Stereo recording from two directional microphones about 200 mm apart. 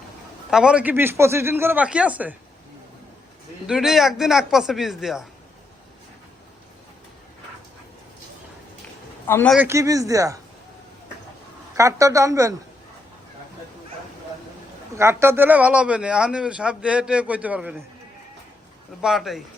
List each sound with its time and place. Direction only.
0.5 s speech: 5° right (ahead or behind)
3.7 s a man's voice: centre (ahead or behind)
9.2 s a man's voice: 10° left (ahead or behind)
9.6 s speech: 15° right (ahead or behind)
11.8 s speech: 15° right (ahead or behind)
14.9 s a man's voice: 10° right (ahead or behind)
19.0 s a man's voice: centre (ahead or behind)